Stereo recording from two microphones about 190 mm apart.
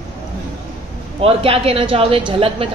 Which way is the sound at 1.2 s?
30° right (ahead or behind).